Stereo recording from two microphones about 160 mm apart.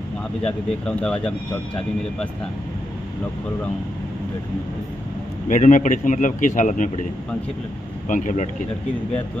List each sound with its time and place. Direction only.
0.5 s speech: 5° left (ahead or behind)
5.5 s speech: 50° left (ahead or behind)
8.1 s speech: 50° left (ahead or behind)